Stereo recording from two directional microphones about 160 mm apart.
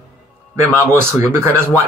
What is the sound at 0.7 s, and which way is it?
Speech, 15° right (ahead or behind).